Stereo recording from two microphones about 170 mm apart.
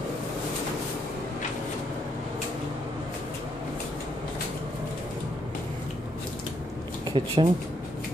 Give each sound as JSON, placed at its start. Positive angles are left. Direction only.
{"t": 7.1, "sound": "speech", "side_deg": -30}